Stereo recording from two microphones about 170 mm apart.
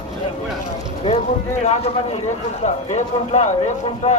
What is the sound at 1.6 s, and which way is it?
A man's voice, 40° left (ahead or behind).